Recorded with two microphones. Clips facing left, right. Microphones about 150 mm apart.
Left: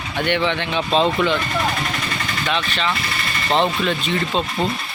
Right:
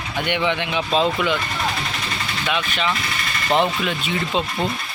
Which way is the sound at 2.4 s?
10° right (ahead or behind).